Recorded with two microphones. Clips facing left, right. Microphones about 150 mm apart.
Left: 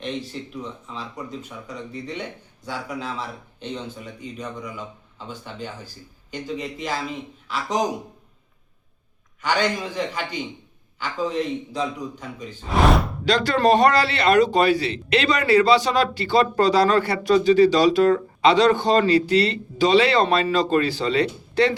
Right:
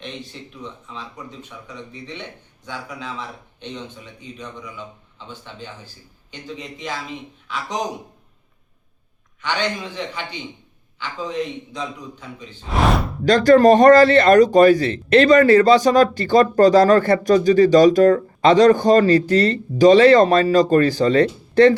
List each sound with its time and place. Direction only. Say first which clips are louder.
0.9 s speech: left 5 dB; 10° left (ahead or behind)
1.6 s speech: left 2 dB; 40° left (ahead or behind)
3.6 s speech: left 2 dB; 10° left (ahead or behind)
9.5 s speech: left 1 dB; 10° left (ahead or behind)
12.6 s speech: even; centre (ahead or behind)
13.2 s speech: right 8 dB; 45° right (ahead or behind)